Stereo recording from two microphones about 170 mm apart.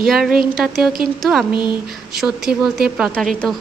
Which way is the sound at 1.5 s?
25° left (ahead or behind).